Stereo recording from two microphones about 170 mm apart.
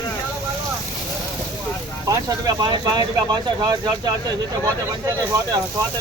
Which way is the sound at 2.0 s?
25° right (ahead or behind).